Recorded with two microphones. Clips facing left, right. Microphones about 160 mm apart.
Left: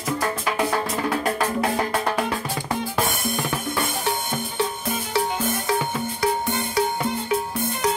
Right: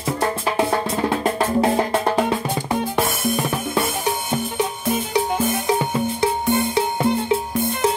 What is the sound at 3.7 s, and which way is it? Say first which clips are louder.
Drum kit: right 3 dB; 15° right (ahead or behind).